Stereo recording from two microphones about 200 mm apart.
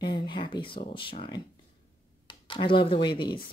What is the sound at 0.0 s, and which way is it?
Speech, 20° left (ahead or behind).